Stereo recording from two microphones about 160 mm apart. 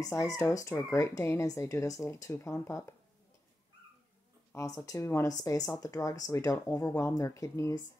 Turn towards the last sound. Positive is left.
turn(degrees=20)  # may be behind; listen again after turning